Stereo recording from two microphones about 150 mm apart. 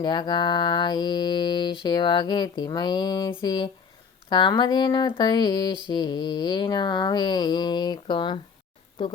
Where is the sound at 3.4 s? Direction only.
30° left (ahead or behind).